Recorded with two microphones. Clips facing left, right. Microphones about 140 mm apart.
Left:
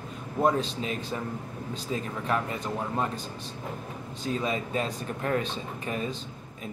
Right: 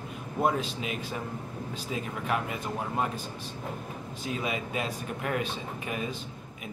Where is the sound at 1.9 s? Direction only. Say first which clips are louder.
Left 2 dB; 35° left (ahead or behind).